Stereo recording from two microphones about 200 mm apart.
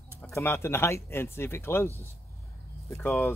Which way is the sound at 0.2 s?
10° left (ahead or behind).